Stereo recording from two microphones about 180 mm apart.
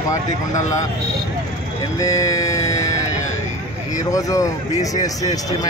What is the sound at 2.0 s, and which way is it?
Music, 20° left (ahead or behind).